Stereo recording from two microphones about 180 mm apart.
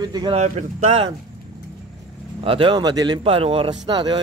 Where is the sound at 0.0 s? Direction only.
25° right (ahead or behind).